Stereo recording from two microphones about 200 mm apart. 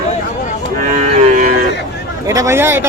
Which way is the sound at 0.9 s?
40° right (ahead or behind).